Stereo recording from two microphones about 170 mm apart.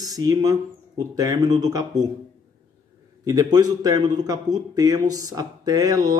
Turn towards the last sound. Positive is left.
turn(degrees=-20)  # may be behind; listen again after turning